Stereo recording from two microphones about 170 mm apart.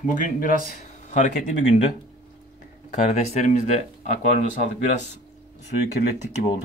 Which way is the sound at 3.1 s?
40° left (ahead or behind).